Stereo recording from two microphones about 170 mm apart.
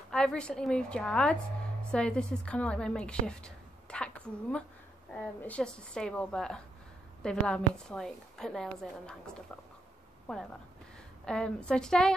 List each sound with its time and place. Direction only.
0.1 s a woman's voice: 5° left (ahead or behind)
11.2 s a woman's voice: 5° left (ahead or behind)